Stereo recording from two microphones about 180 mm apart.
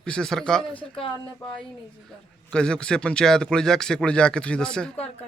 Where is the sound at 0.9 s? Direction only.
30° left (ahead or behind).